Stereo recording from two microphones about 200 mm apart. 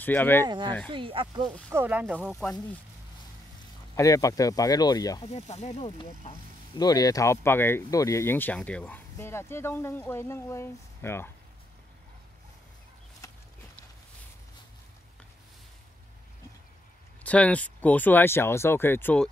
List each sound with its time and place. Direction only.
0.0 s speech: 10° left (ahead or behind)
0.5 s speech: 20° right (ahead or behind)
1.7 s speech: 10° right (ahead or behind)
2.3 s speech: 10° left (ahead or behind)
3.9 s speech: 15° left (ahead or behind)
5.3 s speech: 35° left (ahead or behind)
5.9 s speech: 25° left (ahead or behind)
13.2 s a sound: 15° left (ahead or behind)
17.2 s speech: 5° left (ahead or behind)